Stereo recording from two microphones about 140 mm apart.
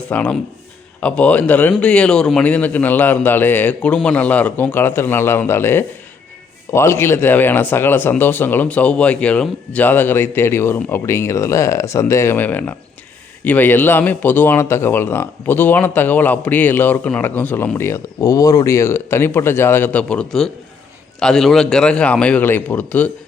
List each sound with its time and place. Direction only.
0.1 s speech: 10° left (ahead or behind)